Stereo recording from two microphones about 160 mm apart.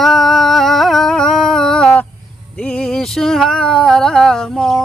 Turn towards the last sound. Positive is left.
turn(degrees=5)  # may be behind; listen again after turning